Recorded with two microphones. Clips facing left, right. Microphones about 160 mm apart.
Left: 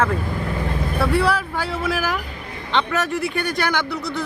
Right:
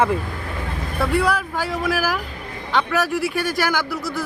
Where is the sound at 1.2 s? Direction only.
10° right (ahead or behind).